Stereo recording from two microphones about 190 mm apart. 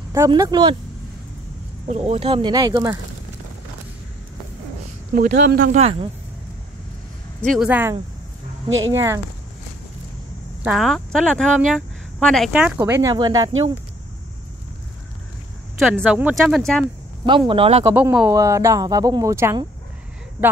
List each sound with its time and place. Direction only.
0.3 s speech: 20° right (ahead or behind)
1.9 s speech: 35° right (ahead or behind)
5.1 s speech: 55° right (ahead or behind)
5.8 s speech: 30° right (ahead or behind)
7.4 s speech: 5° right (ahead or behind)
8.6 s speech: 90° right
8.9 s speech: 15° right (ahead or behind)
10.6 s speech: centre (ahead or behind); by 13.5 s 20° right (ahead or behind)
15.8 s speech: 5° right (ahead or behind)
17.3 s speech: 25° right (ahead or behind)
17.9 s speech: 10° right (ahead or behind)